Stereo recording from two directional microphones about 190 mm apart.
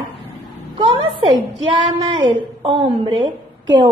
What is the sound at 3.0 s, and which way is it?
Speech, 25° right (ahead or behind).